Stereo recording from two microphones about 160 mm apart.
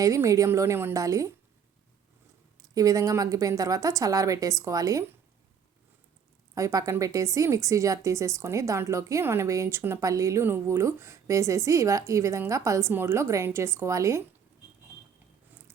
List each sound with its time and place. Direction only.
0.0 s a woman's voice: 20° right (ahead or behind)
2.6 s a woman's voice: 20° right (ahead or behind)
6.5 s a woman's voice: 20° right (ahead or behind)